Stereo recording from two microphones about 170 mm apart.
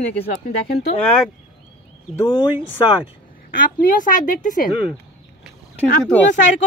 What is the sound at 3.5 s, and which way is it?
Speech, 55° left (ahead or behind).